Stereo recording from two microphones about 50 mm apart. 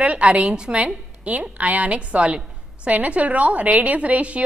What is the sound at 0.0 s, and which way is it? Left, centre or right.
A woman's voice, right.